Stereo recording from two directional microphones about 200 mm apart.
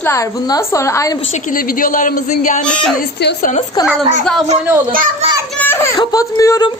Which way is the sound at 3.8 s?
20° left (ahead or behind).